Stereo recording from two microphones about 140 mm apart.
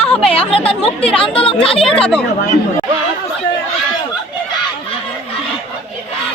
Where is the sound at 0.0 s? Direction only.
10° left (ahead or behind).